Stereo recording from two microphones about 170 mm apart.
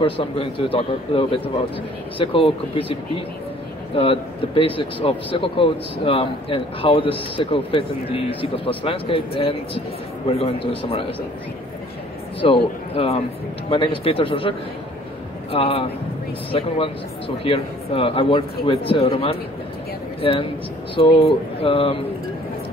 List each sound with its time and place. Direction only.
0.0 s a man's voice: 30° left (ahead or behind)
3.9 s a man's voice: 35° left (ahead or behind)
12.4 s a man's voice: 30° left (ahead or behind)
15.5 s a man's voice: 35° left (ahead or behind)